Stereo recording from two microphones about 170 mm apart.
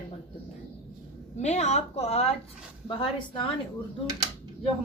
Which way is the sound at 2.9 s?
30° left (ahead or behind).